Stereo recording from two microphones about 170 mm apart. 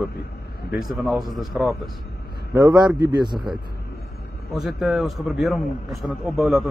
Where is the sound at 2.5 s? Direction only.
25° right (ahead or behind).